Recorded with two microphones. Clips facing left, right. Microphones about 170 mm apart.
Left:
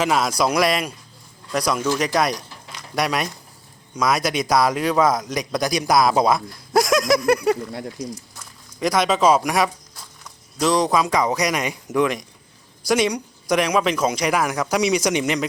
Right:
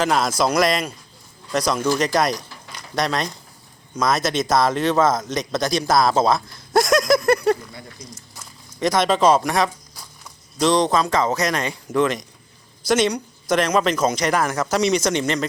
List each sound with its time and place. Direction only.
0.0 s speech: 5° left (ahead or behind)
6.7 s a sound: centre (ahead or behind)
7.7 s speech: 75° left (ahead or behind)
8.8 s speech: centre (ahead or behind)